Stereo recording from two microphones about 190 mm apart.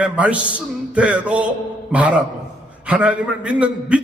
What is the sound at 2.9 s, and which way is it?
A man's voice, 5° right (ahead or behind).